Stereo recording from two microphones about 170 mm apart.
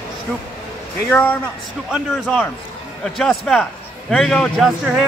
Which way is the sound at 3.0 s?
5° left (ahead or behind).